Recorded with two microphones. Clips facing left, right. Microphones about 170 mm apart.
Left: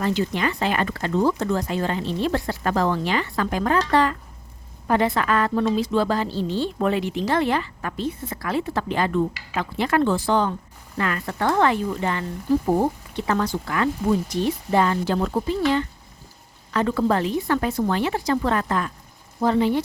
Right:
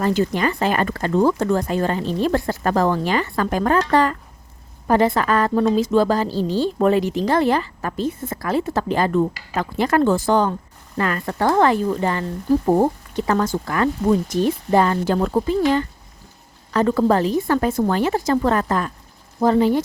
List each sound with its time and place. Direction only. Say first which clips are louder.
0.0 s a woman's voice: right 4 dB; 45° right (ahead or behind)
12.6 s speech: right 5 dB; 60° right (ahead or behind)
13.1 s a woman's voice: right 4 dB; 45° right (ahead or behind)